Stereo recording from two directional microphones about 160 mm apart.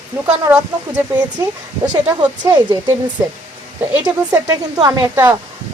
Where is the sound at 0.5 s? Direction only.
10° right (ahead or behind).